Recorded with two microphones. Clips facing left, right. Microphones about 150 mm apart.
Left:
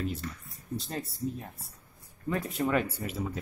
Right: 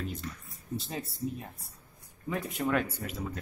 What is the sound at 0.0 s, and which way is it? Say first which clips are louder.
Speech: left 3 dB; centre (ahead or behind).